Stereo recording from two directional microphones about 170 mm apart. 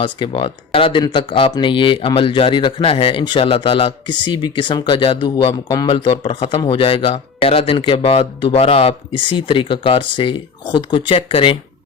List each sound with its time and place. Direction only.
0.0 s speech: 30° left (ahead or behind)